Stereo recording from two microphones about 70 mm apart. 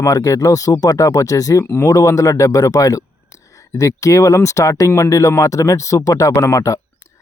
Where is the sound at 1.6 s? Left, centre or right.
Left.